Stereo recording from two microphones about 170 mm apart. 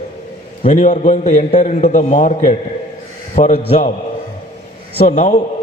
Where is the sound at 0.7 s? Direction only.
45° left (ahead or behind).